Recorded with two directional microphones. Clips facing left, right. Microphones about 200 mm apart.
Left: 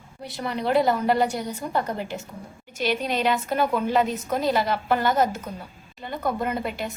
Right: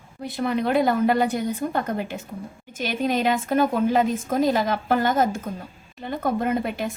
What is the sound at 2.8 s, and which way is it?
A woman's voice, 50° right (ahead or behind).